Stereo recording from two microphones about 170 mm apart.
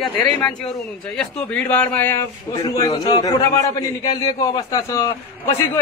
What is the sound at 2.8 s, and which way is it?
A man's voice, 25° left (ahead or behind).